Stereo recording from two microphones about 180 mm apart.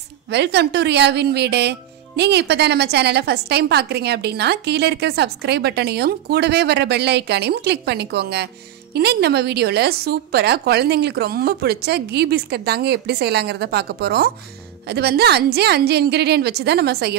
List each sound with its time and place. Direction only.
0.3 s a woman's voice: 70° right (ahead or behind)